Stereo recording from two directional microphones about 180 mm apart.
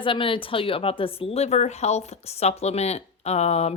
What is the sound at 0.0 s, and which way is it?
A woman's voice, 30° left (ahead or behind).